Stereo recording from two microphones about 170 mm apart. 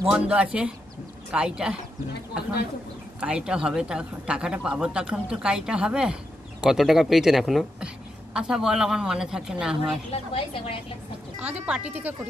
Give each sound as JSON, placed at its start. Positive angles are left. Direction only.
{"t": 0.0, "sound": "speech", "side_deg": -10}
{"t": 3.2, "sound": "speech", "side_deg": -5}
{"t": 10.3, "sound": "a woman's voice", "side_deg": 30}
{"t": 11.3, "sound": "speech", "side_deg": -5}